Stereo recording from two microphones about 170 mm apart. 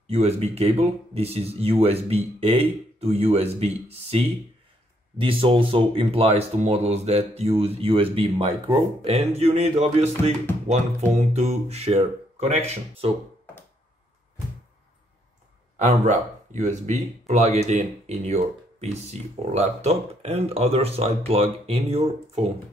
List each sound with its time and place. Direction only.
0.1 s speech: 40° right (ahead or behind)
15.9 s speech: 40° right (ahead or behind)